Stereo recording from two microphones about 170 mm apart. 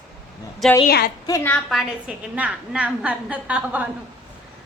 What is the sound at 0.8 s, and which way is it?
Speech, 65° left (ahead or behind).